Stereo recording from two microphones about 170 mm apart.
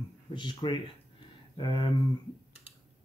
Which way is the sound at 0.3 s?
25° left (ahead or behind).